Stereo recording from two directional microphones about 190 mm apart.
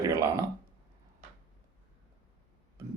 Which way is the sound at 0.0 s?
15° right (ahead or behind).